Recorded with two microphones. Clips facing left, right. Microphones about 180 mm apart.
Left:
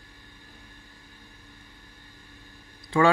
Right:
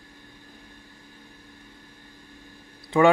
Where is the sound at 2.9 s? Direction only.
20° right (ahead or behind).